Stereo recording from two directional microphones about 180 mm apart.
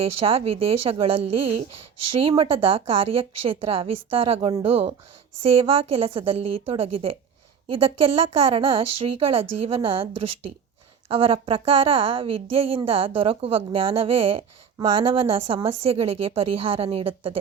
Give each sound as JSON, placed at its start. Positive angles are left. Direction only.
{"t": 0.2, "sound": "a woman's voice", "side_deg": -30}